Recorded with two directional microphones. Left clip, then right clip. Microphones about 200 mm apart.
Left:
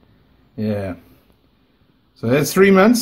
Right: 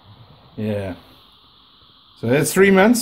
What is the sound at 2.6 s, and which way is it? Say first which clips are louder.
Speech: left 1 dB; 25° right (ahead or behind).